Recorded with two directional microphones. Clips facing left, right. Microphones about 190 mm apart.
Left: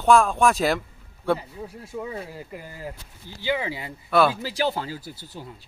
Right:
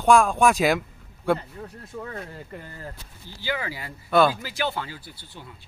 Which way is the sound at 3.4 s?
20° left (ahead or behind).